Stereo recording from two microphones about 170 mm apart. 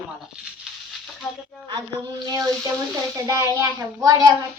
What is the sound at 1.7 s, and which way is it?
Speech, 25° right (ahead or behind).